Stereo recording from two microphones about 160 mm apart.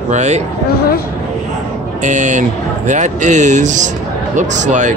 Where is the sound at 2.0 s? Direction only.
50° right (ahead or behind).